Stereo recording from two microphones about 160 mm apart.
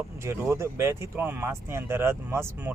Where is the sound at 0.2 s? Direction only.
15° right (ahead or behind).